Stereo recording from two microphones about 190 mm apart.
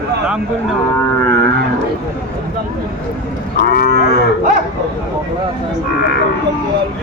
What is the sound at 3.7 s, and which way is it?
Moo, 55° left (ahead or behind).